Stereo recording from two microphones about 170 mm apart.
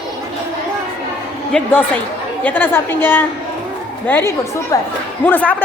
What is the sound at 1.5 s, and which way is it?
A man's voice, 5° left (ahead or behind).